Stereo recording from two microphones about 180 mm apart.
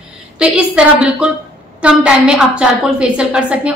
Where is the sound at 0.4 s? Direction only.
5° right (ahead or behind).